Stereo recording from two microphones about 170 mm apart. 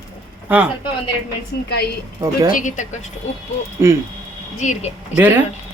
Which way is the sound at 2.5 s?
50° left (ahead or behind).